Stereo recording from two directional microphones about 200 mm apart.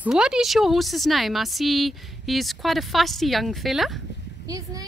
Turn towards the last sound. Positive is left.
turn(degrees=-15)  # may be behind; listen again after turning